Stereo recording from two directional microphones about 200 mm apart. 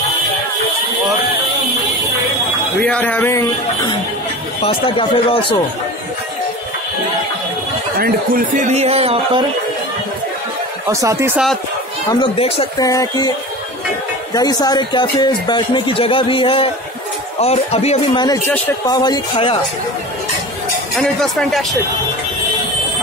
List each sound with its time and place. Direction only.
2.8 s speech: 5° left (ahead or behind)
4.6 s speech: 25° left (ahead or behind)
8.0 s speech: 45° right (ahead or behind)
10.9 s speech: 15° right (ahead or behind)
12.1 s speech: 25° left (ahead or behind)
12.8 s speech: 15° left (ahead or behind)
14.3 s speech: 20° left (ahead or behind)
21.0 s speech: 5° left (ahead or behind)